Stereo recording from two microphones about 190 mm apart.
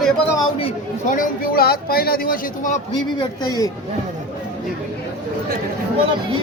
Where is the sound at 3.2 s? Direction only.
20° left (ahead or behind).